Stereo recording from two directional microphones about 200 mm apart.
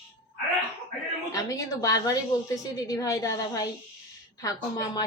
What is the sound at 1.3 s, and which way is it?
A woman's voice, 15° left (ahead or behind).